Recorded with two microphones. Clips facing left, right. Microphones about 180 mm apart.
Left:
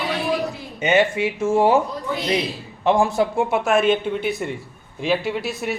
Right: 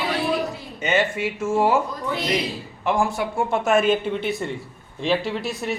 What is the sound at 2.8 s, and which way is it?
Speech, 20° left (ahead or behind).